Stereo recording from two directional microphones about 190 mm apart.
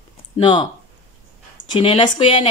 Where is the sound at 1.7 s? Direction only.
25° left (ahead or behind).